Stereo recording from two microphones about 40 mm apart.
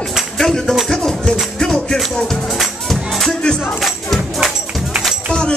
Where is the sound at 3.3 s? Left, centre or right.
Left.